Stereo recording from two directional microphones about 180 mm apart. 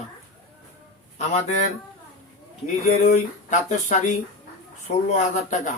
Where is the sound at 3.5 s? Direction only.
45° left (ahead or behind).